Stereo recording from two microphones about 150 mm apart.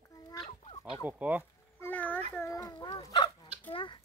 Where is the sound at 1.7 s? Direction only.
10° left (ahead or behind).